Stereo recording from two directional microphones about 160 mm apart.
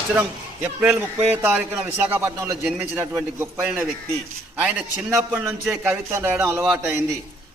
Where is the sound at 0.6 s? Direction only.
10° right (ahead or behind).